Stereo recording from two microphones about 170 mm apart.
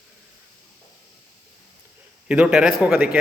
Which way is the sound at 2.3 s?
5° right (ahead or behind).